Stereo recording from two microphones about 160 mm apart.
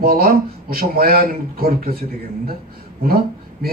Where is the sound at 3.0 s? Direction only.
70° right (ahead or behind).